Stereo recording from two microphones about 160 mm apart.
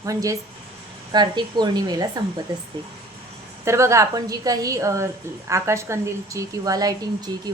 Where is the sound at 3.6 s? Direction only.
20° right (ahead or behind).